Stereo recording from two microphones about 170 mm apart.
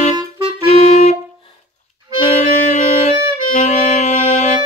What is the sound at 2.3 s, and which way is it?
Music, 40° left (ahead or behind).